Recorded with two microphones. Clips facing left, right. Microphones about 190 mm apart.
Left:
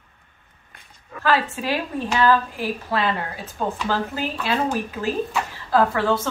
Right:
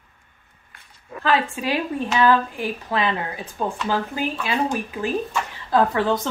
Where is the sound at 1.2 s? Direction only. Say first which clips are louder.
Even; 15° right (ahead or behind).